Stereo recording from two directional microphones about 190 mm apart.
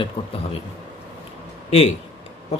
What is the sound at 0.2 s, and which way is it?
Speech, 30° left (ahead or behind).